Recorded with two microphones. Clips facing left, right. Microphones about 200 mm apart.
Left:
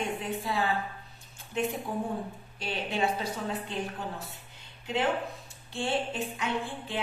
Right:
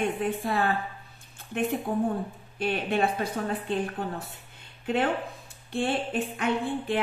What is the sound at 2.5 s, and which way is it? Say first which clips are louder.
Speech: right 6 dB; 55° right (ahead or behind).